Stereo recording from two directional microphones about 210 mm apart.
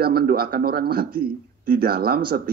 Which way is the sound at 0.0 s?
45° right (ahead or behind).